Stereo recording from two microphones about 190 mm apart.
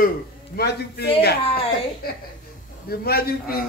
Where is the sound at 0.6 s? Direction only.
55° left (ahead or behind).